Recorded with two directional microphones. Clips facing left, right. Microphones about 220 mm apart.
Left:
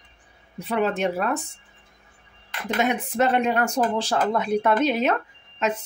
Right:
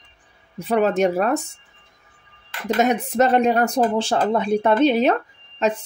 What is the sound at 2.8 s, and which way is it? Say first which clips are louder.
Speech: right 4 dB; 40° right (ahead or behind).